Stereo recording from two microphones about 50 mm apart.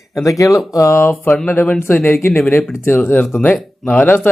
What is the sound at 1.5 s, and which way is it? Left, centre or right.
Speech, left.